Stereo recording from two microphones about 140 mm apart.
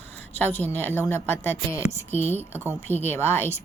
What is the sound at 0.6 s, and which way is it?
Speech, 15° left (ahead or behind).